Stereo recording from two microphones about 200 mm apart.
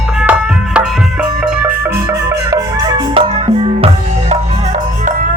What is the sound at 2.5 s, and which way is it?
Music, 25° right (ahead or behind).